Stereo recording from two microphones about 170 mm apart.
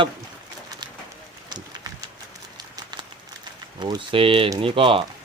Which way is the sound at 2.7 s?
25° right (ahead or behind).